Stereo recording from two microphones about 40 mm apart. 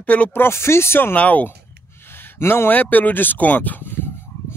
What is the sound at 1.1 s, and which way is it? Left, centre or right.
Speech, left.